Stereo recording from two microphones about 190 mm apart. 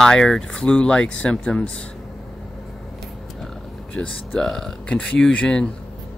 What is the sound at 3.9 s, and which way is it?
Speech, centre (ahead or behind).